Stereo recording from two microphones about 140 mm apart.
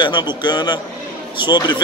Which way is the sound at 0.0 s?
35° left (ahead or behind).